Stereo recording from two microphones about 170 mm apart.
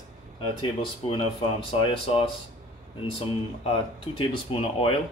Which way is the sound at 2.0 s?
35° left (ahead or behind).